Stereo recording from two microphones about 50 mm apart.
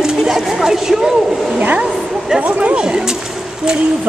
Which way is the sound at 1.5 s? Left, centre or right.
Right.